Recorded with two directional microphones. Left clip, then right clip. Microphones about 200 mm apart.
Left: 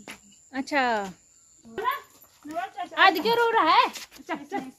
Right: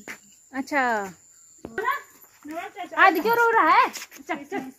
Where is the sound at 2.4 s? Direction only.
40° left (ahead or behind).